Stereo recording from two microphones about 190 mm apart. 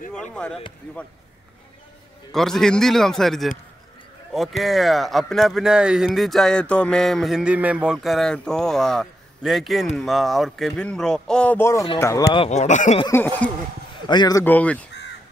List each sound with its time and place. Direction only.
0.1 s speech: 5° left (ahead or behind)
2.3 s speech: centre (ahead or behind)
12.4 s speech: 35° left (ahead or behind)
14.0 s a man's voice: 20° left (ahead or behind)
14.4 s speech: 10° left (ahead or behind)